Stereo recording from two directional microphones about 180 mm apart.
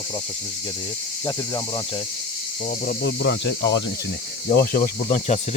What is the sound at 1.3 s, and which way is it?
Speech, 20° left (ahead or behind).